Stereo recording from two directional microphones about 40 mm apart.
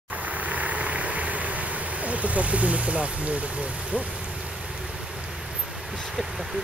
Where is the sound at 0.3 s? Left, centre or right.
Right.